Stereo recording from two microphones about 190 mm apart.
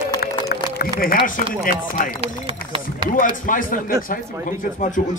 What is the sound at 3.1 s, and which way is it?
Speech, 45° left (ahead or behind).